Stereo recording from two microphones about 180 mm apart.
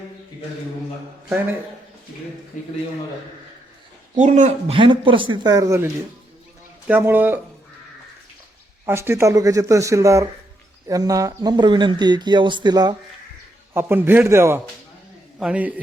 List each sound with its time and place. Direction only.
2.5 s a man's voice: 45° left (ahead or behind)
4.1 s speech: 40° right (ahead or behind)
4.8 s speech: 25° right (ahead or behind); by 7.3 s 10° right (ahead or behind)
8.9 s speech: 15° right (ahead or behind)
13.7 s speech: 15° right (ahead or behind)